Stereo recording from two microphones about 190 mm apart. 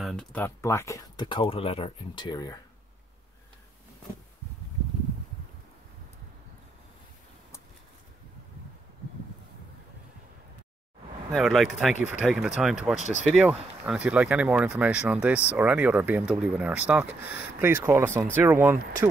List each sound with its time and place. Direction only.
0.0 s speech: 5° left (ahead or behind); by 2.6 s 20° left (ahead or behind)
11.3 s speech: centre (ahead or behind)